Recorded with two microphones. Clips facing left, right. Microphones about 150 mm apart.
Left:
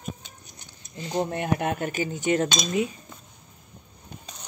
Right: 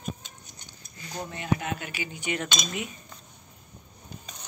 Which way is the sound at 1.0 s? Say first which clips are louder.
Left 10 dB; 25° left (ahead or behind).